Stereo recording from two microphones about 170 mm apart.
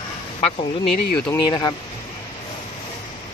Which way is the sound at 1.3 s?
25° left (ahead or behind).